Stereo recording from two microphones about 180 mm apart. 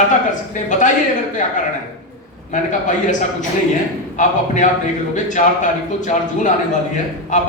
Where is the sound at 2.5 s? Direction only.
45° left (ahead or behind).